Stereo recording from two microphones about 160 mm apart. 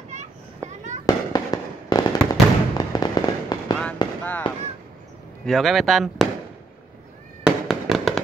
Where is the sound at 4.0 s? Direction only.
25° left (ahead or behind).